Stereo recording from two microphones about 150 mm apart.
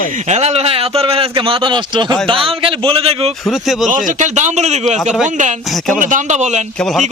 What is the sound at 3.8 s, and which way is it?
A man's voice, 60° right (ahead or behind).